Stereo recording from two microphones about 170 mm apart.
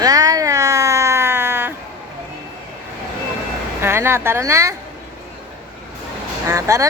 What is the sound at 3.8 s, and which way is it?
Speech, 15° right (ahead or behind).